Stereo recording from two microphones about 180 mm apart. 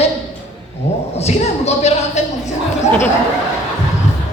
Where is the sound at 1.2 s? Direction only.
35° left (ahead or behind).